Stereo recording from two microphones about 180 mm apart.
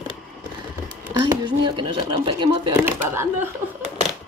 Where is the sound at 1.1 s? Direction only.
25° right (ahead or behind).